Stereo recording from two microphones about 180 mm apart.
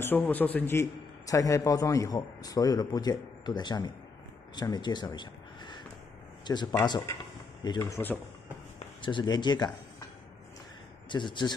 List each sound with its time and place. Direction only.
0.0 s a man's voice: 10° left (ahead or behind)
9.0 s speech: 25° left (ahead or behind)
11.1 s a man's voice: 25° left (ahead or behind)